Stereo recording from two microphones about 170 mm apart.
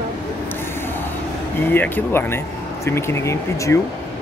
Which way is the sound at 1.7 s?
10° left (ahead or behind).